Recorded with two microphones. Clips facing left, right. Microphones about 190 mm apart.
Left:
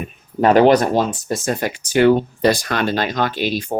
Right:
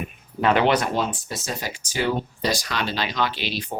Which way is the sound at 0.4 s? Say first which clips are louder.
Left 8 dB; 40° left (ahead or behind).